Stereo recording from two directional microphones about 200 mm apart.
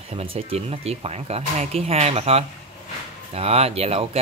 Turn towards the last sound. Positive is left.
turn(degrees=-30)  # may be behind; listen again after turning